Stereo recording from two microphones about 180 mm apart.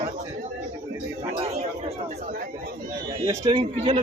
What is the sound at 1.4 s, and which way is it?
Speech, 35° right (ahead or behind).